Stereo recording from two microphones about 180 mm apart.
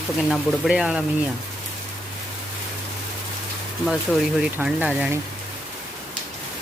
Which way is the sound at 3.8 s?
Centre (ahead or behind).